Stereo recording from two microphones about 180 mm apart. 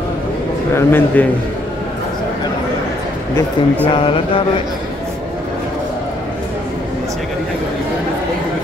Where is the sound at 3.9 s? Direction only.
30° left (ahead or behind).